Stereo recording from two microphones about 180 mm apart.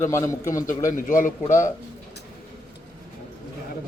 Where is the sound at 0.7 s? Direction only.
45° left (ahead or behind).